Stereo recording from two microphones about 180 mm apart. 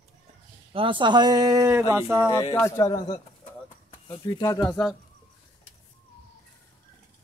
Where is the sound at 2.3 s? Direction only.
20° left (ahead or behind).